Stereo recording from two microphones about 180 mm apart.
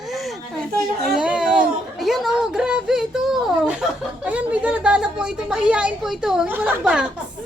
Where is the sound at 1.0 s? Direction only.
5° right (ahead or behind).